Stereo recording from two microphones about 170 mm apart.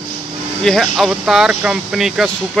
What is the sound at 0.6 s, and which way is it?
Speech, centre (ahead or behind).